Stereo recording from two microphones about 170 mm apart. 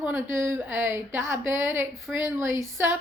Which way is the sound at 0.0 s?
15° right (ahead or behind).